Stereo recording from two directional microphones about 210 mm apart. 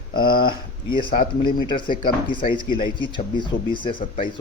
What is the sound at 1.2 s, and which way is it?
Speech, 45° left (ahead or behind).